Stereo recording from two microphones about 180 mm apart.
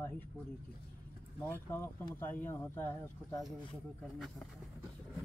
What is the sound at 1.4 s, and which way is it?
Speech, 15° left (ahead or behind).